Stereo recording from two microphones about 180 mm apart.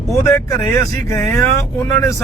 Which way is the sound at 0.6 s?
15° left (ahead or behind).